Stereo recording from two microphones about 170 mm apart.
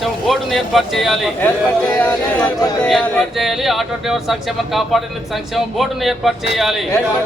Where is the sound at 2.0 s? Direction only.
10° left (ahead or behind).